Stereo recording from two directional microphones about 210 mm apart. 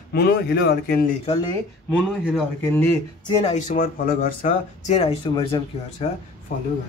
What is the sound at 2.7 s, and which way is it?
Speech, 10° left (ahead or behind).